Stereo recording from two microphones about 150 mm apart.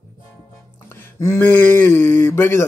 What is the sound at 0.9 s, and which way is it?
Speech, 20° left (ahead or behind).